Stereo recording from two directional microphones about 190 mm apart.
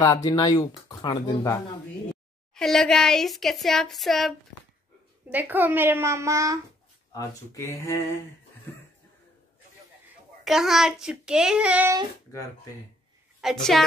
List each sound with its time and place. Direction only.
0.0 s speech: 20° left (ahead or behind)
2.5 s speech: centre (ahead or behind)
5.3 s a child's voice: 10° right (ahead or behind)
7.1 s speech: 15° left (ahead or behind)
10.4 s speech: centre (ahead or behind)
12.3 s speech: 15° left (ahead or behind)
13.4 s speech: centre (ahead or behind)